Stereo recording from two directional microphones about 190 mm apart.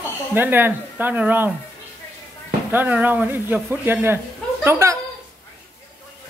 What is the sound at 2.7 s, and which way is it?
Speech, 10° right (ahead or behind).